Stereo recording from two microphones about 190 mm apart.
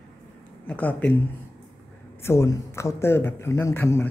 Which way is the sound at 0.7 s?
10° left (ahead or behind).